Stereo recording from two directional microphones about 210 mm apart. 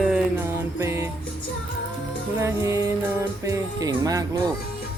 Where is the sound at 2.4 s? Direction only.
15° right (ahead or behind).